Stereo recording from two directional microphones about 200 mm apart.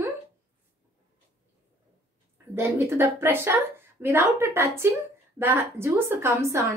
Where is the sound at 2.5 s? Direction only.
15° right (ahead or behind).